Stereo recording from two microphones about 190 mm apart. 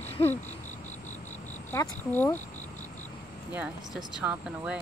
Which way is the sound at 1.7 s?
15° left (ahead or behind).